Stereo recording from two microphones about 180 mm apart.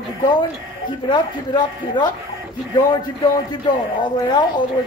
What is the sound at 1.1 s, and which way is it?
A woman's voice, 25° left (ahead or behind).